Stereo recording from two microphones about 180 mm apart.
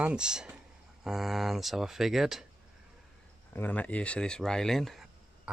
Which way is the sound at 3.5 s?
10° left (ahead or behind).